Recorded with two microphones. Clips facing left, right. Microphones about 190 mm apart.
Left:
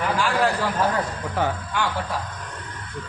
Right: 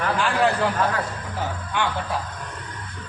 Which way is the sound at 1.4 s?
65° left (ahead or behind).